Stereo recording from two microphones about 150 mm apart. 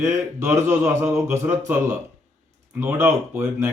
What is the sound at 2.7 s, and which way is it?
Speech, 15° right (ahead or behind).